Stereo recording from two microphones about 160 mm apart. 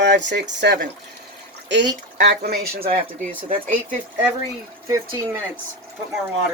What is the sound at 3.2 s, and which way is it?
Speech, 60° right (ahead or behind).